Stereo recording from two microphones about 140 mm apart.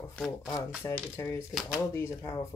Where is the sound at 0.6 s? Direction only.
5° right (ahead or behind).